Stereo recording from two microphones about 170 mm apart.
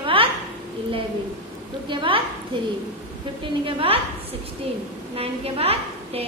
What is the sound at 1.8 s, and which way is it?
Speech, 30° right (ahead or behind).